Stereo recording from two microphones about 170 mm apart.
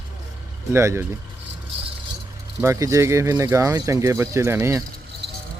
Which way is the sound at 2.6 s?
15° right (ahead or behind).